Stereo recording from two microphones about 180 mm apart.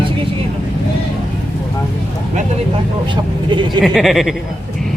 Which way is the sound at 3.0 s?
25° right (ahead or behind).